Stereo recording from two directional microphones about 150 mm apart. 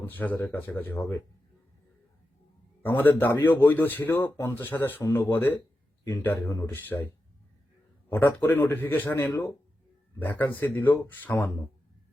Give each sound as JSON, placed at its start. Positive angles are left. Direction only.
{"t": 0.0, "sound": "a man's voice", "side_deg": 10}
{"t": 2.8, "sound": "a man's voice", "side_deg": 15}
{"t": 8.1, "sound": "a man's voice", "side_deg": 15}